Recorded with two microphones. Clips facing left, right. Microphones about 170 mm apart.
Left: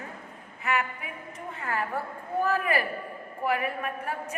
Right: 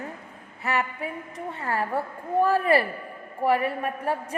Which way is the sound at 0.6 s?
35° right (ahead or behind).